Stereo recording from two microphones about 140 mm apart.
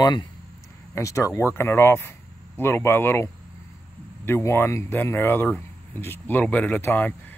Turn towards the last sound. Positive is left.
turn(degrees=15)  # may be behind; listen again after turning